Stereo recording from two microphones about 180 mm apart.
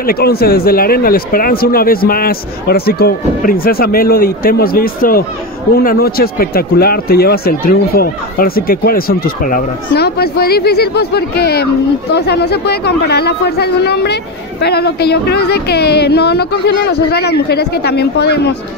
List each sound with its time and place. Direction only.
0.0 s speech: 60° left (ahead or behind)